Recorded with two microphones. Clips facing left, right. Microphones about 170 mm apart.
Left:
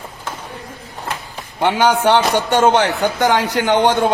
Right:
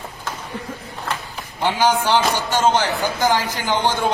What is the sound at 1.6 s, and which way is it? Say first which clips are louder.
A man's voice: left 4 dB; 65° left (ahead or behind).